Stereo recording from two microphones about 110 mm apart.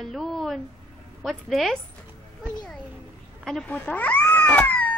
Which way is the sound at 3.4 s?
10° left (ahead or behind).